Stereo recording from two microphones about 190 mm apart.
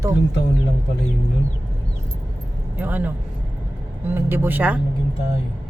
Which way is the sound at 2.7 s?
10° right (ahead or behind).